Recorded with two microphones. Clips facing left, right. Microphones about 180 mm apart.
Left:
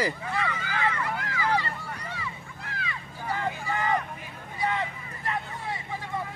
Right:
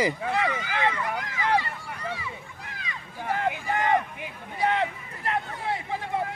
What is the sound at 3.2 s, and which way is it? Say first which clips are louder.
Vehicle: right 3 dB; 60° right (ahead or behind).